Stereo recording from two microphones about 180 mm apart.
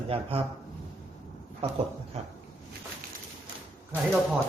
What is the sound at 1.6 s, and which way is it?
Speech, 30° right (ahead or behind).